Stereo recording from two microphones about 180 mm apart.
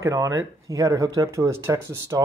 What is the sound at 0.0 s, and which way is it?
Speech, 15° right (ahead or behind).